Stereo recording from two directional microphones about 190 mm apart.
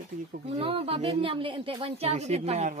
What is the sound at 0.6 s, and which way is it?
Speech, 30° right (ahead or behind).